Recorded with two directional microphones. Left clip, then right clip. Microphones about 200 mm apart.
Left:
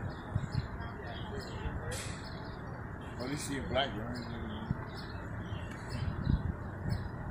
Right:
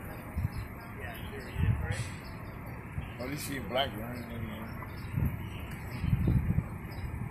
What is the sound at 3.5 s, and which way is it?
Speech, 25° right (ahead or behind).